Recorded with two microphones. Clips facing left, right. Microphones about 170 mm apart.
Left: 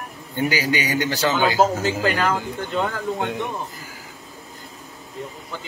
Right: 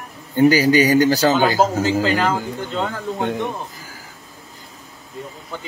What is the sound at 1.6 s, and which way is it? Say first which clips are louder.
Speech: right 2 dB; 20° right (ahead or behind).